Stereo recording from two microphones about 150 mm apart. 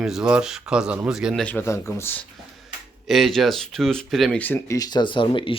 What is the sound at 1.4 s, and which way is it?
Speech, 15° left (ahead or behind).